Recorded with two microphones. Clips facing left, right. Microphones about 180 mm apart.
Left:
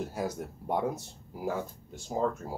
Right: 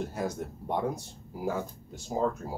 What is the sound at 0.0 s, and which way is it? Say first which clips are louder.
Speech: right 1 dB; 5° left (ahead or behind).